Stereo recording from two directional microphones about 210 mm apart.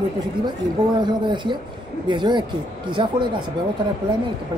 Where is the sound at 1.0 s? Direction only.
20° right (ahead or behind).